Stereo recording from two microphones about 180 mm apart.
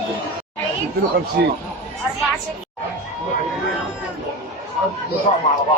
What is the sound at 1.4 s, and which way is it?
Speech, 65° right (ahead or behind).